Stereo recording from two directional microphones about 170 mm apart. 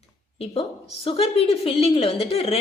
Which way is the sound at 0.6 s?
35° left (ahead or behind).